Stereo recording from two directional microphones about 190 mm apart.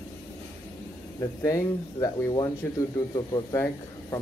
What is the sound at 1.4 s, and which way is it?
Speech, 15° left (ahead or behind).